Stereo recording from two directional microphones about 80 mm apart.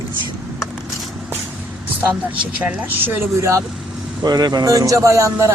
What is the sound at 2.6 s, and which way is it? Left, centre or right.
Speech, right.